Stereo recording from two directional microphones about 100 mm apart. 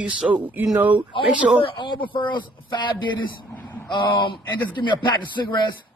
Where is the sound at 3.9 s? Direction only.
55° left (ahead or behind).